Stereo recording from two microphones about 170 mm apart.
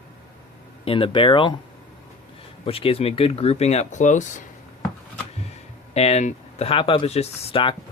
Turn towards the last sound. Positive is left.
turn(degrees=30)  # may be behind; listen again after turning